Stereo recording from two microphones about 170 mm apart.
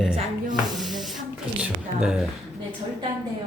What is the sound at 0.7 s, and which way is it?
Speech, centre (ahead or behind).